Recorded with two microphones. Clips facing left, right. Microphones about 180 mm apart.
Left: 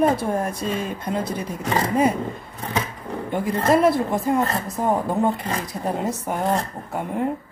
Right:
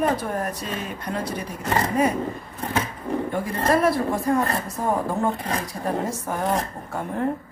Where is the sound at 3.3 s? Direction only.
20° left (ahead or behind).